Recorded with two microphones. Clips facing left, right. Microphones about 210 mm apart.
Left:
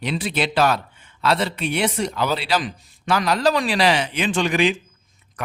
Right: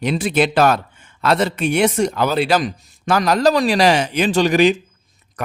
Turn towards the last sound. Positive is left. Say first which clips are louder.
# right 4 dB
turn(degrees=-45)  # may be behind; listen again after turning